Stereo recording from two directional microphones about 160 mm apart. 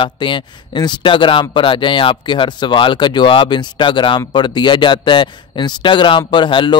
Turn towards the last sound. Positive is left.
turn(degrees=30)  # may be behind; listen again after turning